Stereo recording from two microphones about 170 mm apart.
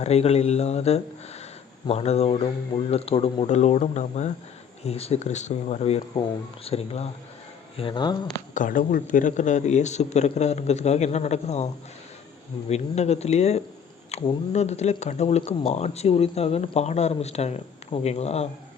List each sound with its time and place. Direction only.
0.0 s speech: 40° left (ahead or behind)
8.5 s speech: 50° left (ahead or behind)